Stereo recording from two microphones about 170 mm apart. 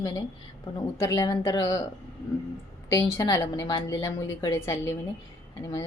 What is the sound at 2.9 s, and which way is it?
A woman's voice, 15° left (ahead or behind).